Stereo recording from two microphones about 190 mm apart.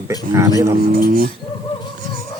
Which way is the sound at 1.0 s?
50° right (ahead or behind).